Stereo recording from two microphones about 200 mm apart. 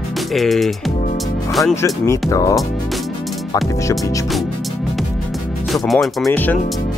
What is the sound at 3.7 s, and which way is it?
Speech, 15° left (ahead or behind).